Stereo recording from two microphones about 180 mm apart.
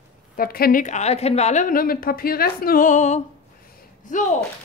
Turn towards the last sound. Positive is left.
turn(degrees=45)  # may be behind; listen again after turning